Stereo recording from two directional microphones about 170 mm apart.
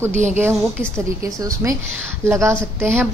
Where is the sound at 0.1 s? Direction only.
45° right (ahead or behind).